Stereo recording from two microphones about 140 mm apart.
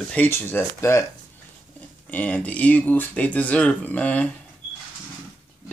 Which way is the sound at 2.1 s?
10° left (ahead or behind).